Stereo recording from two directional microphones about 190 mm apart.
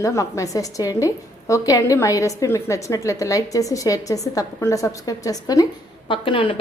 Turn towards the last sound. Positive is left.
turn(degrees=25)  # may be behind; listen again after turning